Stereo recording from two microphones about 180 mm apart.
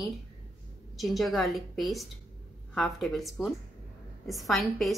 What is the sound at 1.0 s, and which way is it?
Speech, centre (ahead or behind).